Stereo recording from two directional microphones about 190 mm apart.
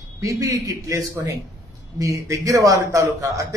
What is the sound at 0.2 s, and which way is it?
A man's voice, 15° right (ahead or behind).